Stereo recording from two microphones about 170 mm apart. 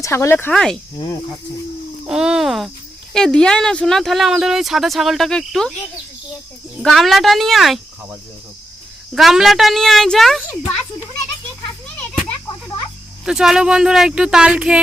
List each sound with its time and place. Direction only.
0.0 s speech: 15° left (ahead or behind)
0.5 s speech: 5° left (ahead or behind)
2.0 s speech: 5° right (ahead or behind)
6.8 s speech: centre (ahead or behind)
9.1 s speech: centre (ahead or behind)
13.2 s speech: 5° right (ahead or behind)